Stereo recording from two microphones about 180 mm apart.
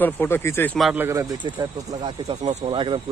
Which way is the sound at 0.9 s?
15° right (ahead or behind).